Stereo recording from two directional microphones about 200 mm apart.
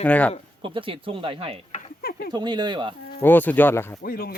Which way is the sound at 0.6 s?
25° right (ahead or behind).